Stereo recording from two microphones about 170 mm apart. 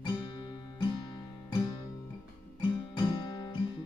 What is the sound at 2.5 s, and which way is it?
Music, 25° left (ahead or behind).